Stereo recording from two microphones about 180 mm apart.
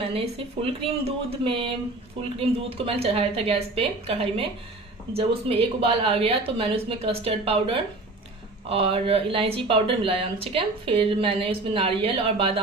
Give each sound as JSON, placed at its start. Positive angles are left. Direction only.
{"t": 0.6, "sound": "speech", "side_deg": -30}